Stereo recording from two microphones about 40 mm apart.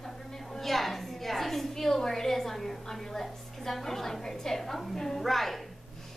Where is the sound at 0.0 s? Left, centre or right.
Centre.